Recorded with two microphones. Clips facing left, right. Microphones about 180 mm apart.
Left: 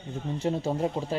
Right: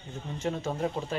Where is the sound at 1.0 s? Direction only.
20° left (ahead or behind).